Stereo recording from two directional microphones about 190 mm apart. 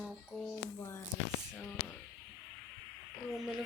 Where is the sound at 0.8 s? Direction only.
15° left (ahead or behind).